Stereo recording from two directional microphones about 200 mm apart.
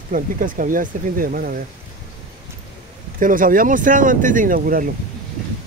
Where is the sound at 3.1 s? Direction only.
40° right (ahead or behind).